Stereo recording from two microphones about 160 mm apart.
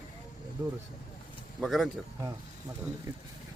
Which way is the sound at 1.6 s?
Centre (ahead or behind).